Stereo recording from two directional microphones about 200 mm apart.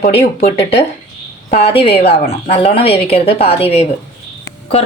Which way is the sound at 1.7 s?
30° left (ahead or behind).